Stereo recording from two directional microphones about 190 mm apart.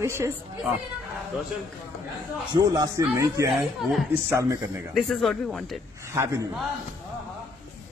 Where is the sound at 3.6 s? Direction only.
Centre (ahead or behind).